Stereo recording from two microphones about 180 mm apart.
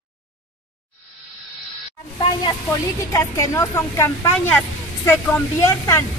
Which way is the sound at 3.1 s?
15° left (ahead or behind).